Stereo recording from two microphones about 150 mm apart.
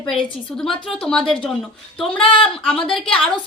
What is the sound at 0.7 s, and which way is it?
Speech, 35° left (ahead or behind).